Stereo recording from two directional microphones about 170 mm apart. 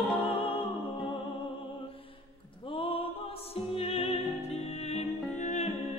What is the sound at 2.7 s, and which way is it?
Music, 30° left (ahead or behind).